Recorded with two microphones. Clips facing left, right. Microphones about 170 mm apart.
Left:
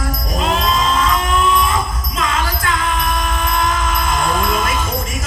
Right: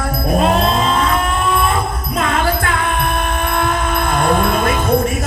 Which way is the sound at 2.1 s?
55° right (ahead or behind).